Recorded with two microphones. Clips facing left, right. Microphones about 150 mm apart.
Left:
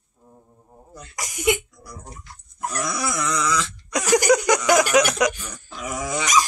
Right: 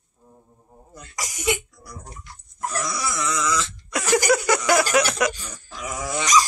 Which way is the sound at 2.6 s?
20° left (ahead or behind).